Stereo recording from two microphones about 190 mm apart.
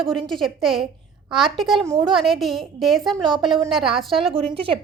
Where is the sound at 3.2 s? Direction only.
25° right (ahead or behind).